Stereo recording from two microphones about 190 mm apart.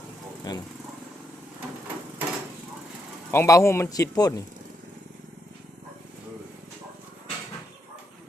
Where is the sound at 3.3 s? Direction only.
15° left (ahead or behind).